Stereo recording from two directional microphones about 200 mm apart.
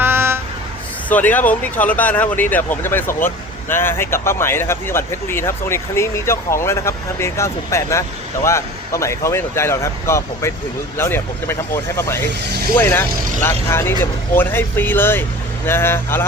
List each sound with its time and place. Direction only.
0.0 s vehicle: 10° right (ahead or behind)
1.1 s speech: 10° left (ahead or behind)
12.4 s speech: 55° right (ahead or behind)
12.8 s speech: 10° left (ahead or behind)